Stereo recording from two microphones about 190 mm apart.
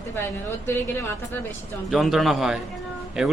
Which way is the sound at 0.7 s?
10° left (ahead or behind).